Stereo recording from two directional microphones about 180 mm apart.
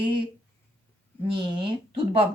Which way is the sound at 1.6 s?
30° right (ahead or behind).